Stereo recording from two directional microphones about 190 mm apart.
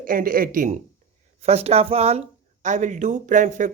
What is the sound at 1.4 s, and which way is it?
Speech, 35° right (ahead or behind).